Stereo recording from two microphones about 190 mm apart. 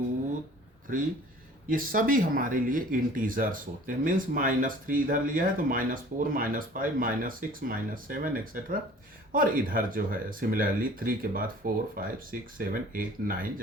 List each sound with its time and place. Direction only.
1.7 s speech: 45° right (ahead or behind)